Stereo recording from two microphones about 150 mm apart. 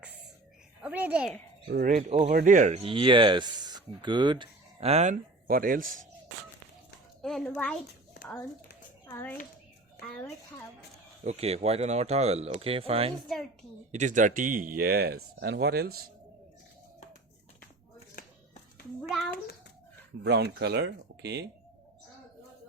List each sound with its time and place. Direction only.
0.8 s a child's voice: 10° right (ahead or behind)
1.6 s speech: 75° right (ahead or behind); by 2.8 s 55° right (ahead or behind)
2.8 s speech: 35° right (ahead or behind)
4.8 s speech: 45° right (ahead or behind)
5.1 s speech: 70° right (ahead or behind)
7.2 s a child's voice: centre (ahead or behind)
9.0 s speech: 15° left (ahead or behind)
11.2 s speech: 45° right (ahead or behind)
13.2 s a child's voice: centre (ahead or behind)
13.9 s speech: 55° right (ahead or behind); by 16.0 s 90° right
20.2 s speech: 90° right